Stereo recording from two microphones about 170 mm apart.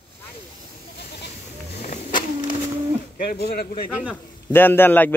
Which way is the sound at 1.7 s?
40° left (ahead or behind).